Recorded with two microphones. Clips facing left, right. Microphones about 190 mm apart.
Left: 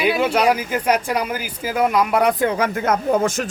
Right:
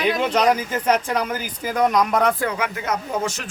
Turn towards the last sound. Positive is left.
turn(degrees=50)  # may be behind; listen again after turning